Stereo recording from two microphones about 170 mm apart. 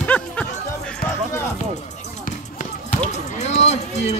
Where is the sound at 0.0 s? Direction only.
10° left (ahead or behind).